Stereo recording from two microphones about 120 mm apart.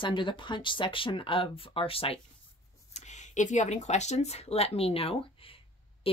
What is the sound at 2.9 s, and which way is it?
Speech, 80° left.